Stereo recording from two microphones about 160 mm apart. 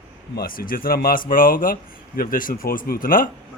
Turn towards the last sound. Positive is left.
turn(degrees=60)  # may be behind; listen again after turning